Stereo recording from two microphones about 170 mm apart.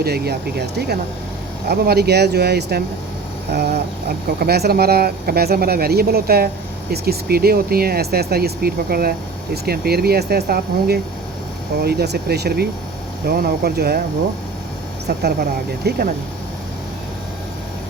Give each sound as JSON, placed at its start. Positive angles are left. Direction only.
{"t": 0.0, "sound": "speech", "side_deg": -70}
{"t": 15.8, "sound": "speech", "side_deg": -70}